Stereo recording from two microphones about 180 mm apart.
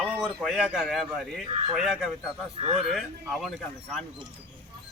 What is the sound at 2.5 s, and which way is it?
Speech, 30° right (ahead or behind).